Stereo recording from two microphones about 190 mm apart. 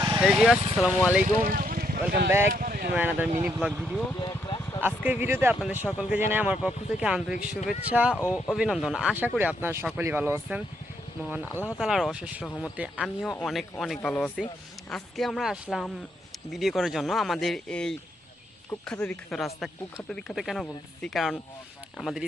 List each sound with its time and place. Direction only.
0.2 s speech: 5° right (ahead or behind)
1.2 s vehicle: 45° right (ahead or behind)
2.0 s speech: 60° right (ahead or behind)
2.5 s speech: 50° right (ahead or behind)
2.9 s speech: 10° right (ahead or behind)
3.7 s speech: centre (ahead or behind)
4.2 s a sound: 25° left (ahead or behind)
4.8 s speech: 10° right (ahead or behind)
7.3 s speech: 45° left (ahead or behind)
7.9 s speech: 5° right (ahead or behind)
11.8 s speech: centre (ahead or behind)